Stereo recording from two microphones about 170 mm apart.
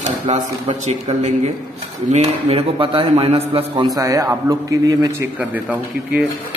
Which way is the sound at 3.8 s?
20° right (ahead or behind).